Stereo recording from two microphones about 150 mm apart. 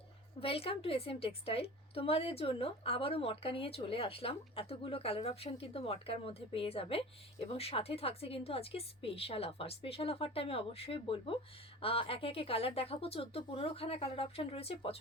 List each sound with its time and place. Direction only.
0.3 s a woman's voice: 40° left (ahead or behind)